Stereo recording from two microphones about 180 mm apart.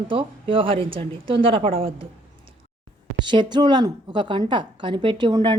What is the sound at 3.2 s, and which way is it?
A woman's voice, 25° right (ahead or behind).